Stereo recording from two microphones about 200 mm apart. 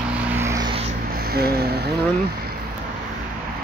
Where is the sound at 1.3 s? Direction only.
50° right (ahead or behind).